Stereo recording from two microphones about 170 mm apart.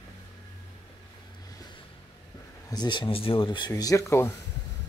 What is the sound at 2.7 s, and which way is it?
Speech, 25° left (ahead or behind).